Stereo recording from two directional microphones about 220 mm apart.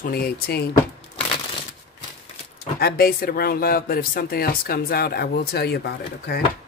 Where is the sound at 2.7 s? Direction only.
45° left (ahead or behind).